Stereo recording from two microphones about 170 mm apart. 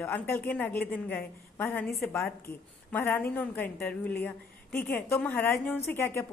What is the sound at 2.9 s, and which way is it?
A woman's voice, 10° left (ahead or behind).